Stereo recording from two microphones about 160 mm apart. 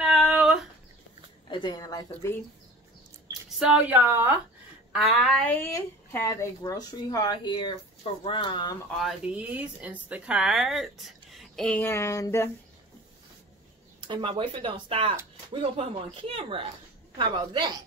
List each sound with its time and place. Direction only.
0.0 s female singing: centre (ahead or behind)
1.5 s speech: 25° left (ahead or behind)
3.4 s speech: 5° right (ahead or behind)
4.9 s speech: centre (ahead or behind); by 8.7 s 30° left (ahead or behind)
8.9 s speech: 5° right (ahead or behind); by 12.4 s 20° left (ahead or behind)
14.0 s a woman's voice: 30° right (ahead or behind)